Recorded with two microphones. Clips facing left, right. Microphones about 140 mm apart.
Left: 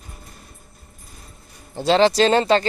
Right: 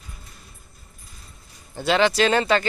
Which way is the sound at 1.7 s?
30° left (ahead or behind).